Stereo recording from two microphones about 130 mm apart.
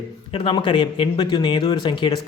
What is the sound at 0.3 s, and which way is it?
Speech, 45° left (ahead or behind).